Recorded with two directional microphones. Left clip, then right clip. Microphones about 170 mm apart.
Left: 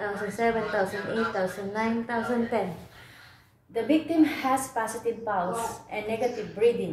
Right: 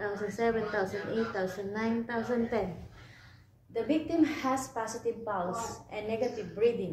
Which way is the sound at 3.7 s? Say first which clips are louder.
Left 5 dB; 15° left (ahead or behind).